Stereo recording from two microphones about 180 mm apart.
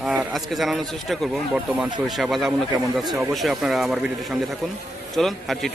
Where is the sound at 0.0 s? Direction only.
5° right (ahead or behind).